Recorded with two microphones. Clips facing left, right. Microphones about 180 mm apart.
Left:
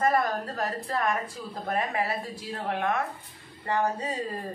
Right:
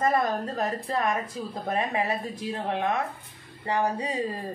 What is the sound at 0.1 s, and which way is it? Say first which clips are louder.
Speech: right 1 dB; 20° right (ahead or behind).